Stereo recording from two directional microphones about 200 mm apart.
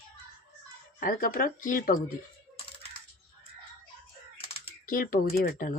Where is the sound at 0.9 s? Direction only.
45° left (ahead or behind).